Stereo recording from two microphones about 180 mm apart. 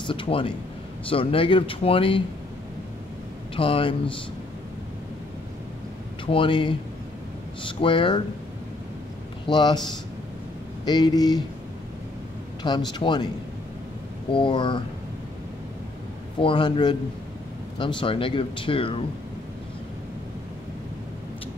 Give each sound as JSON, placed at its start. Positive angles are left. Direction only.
{"t": 0.0, "sound": "speech", "side_deg": 30}
{"t": 3.5, "sound": "speech", "side_deg": 30}
{"t": 6.2, "sound": "speech", "side_deg": 30}
{"t": 9.5, "sound": "speech", "side_deg": 25}
{"t": 10.9, "sound": "speech", "side_deg": 25}
{"t": 12.6, "sound": "speech", "side_deg": 25}
{"t": 14.3, "sound": "speech", "side_deg": 25}
{"t": 16.3, "sound": "speech", "side_deg": 30}